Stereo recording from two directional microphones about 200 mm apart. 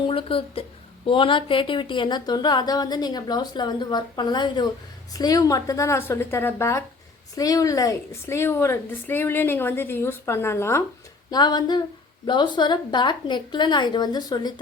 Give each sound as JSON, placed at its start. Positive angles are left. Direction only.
{"t": 0.1, "sound": "a woman's voice", "side_deg": 30}